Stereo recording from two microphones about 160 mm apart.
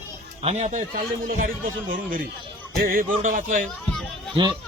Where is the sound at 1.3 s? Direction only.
60° right (ahead or behind).